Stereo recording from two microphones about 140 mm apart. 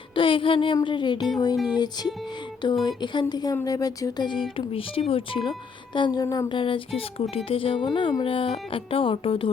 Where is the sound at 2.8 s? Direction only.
35° left (ahead or behind).